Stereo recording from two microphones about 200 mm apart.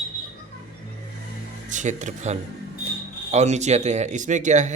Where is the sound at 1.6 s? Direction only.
40° right (ahead or behind).